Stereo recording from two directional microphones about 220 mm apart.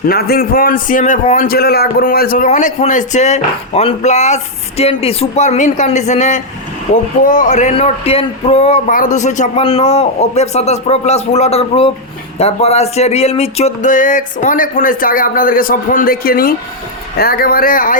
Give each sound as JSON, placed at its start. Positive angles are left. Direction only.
{"t": 0.1, "sound": "a man's voice", "side_deg": 45}